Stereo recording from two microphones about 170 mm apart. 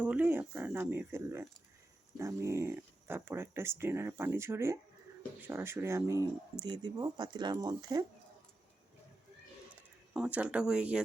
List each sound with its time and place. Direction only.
0.0 s speech: 10° right (ahead or behind)
10.2 s speech: 5° right (ahead or behind)